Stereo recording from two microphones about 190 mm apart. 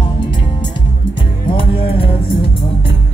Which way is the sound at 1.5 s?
30° left (ahead or behind).